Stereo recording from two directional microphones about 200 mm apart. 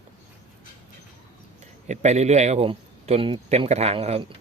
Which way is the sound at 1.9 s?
35° right (ahead or behind).